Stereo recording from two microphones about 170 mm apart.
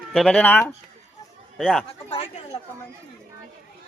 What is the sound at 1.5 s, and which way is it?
Speech, centre (ahead or behind).